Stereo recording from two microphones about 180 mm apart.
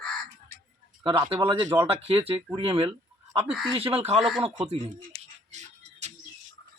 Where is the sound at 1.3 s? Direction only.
30° right (ahead or behind).